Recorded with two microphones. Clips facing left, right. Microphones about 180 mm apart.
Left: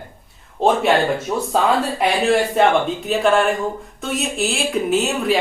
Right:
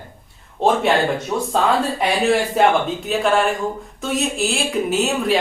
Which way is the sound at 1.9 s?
Centre (ahead or behind).